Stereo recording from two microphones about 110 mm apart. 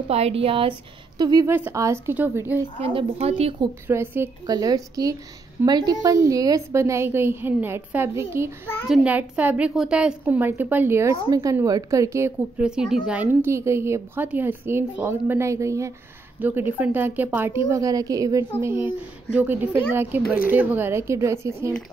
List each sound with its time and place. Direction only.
0.1 s speech: 65° right (ahead or behind)
1.1 s speech: 35° right (ahead or behind)
1.5 s a woman's voice: 20° right (ahead or behind)
2.8 s speech: 60° right (ahead or behind)
3.8 s a woman's voice: 20° right (ahead or behind)
4.5 s a woman's voice: 35° right (ahead or behind)
9.0 s a woman's voice: 15° right (ahead or behind)
11.2 s a woman's voice: 35° right (ahead or behind)
12.5 s a woman's voice: 5° right (ahead or behind); by 15.9 s 25° right (ahead or behind)
16.3 s a woman's voice: 15° right (ahead or behind)